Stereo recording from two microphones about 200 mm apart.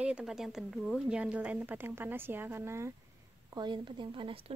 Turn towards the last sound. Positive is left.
turn(degrees=-25)  # may be behind; listen again after turning